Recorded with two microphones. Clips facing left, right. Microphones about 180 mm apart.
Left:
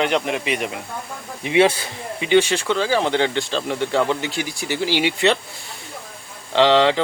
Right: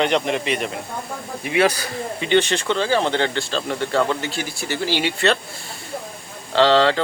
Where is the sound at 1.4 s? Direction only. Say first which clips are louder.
Left 3 dB; 25° left (ahead or behind).